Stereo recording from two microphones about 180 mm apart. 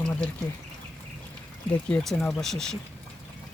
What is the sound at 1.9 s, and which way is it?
Speech, 5° left (ahead or behind).